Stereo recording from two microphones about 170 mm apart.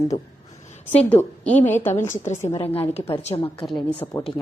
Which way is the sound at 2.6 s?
35° left (ahead or behind).